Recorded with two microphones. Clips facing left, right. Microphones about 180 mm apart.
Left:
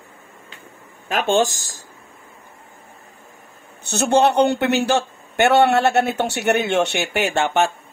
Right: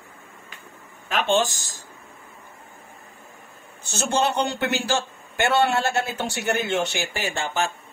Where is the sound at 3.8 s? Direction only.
60° left (ahead or behind).